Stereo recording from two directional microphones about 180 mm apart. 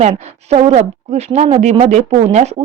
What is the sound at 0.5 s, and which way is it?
A woman's voice, 35° right (ahead or behind).